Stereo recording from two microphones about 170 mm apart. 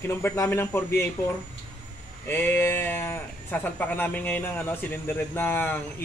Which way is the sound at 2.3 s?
15° left (ahead or behind).